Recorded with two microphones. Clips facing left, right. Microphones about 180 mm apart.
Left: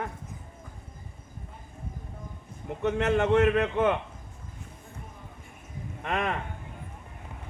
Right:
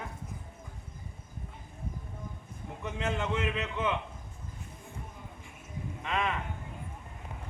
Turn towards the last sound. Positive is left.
turn(degrees=50)  # may be behind; listen again after turning